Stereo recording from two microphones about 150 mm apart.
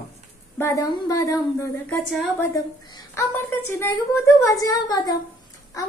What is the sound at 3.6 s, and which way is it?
Speech, 15° left (ahead or behind).